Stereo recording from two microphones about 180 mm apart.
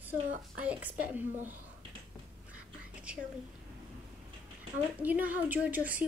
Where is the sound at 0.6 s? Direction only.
10° right (ahead or behind).